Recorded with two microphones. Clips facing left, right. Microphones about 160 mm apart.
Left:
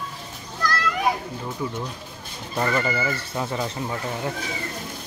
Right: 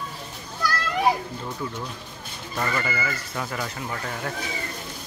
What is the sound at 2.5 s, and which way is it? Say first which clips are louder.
Speech: left 4 dB; 25° left (ahead or behind).